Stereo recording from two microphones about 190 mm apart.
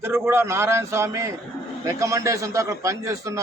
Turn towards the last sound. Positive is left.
turn(degrees=-15)  # may be behind; listen again after turning